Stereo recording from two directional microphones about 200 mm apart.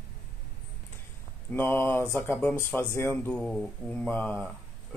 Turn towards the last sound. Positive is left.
turn(degrees=10)  # may be behind; listen again after turning